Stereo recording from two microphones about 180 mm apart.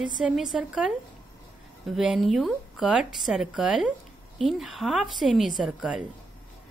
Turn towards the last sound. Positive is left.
turn(degrees=-5)  # may be behind; listen again after turning